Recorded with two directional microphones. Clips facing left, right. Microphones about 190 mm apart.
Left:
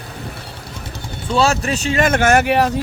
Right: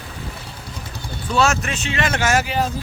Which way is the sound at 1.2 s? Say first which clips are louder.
Left 3 dB; 30° left (ahead or behind).